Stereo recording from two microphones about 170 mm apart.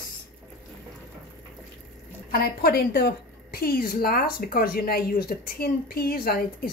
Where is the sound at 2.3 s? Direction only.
65° left (ahead or behind).